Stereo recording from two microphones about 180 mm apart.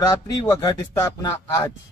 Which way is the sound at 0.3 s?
20° left (ahead or behind).